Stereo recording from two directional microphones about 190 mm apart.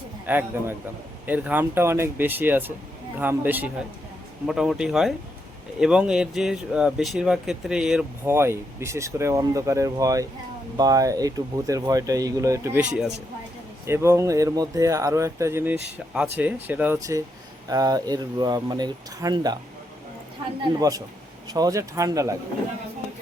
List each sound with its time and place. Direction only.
0.3 s speech: 10° right (ahead or behind)
13.8 s speech: 15° right (ahead or behind)
20.9 s speech: 20° right (ahead or behind)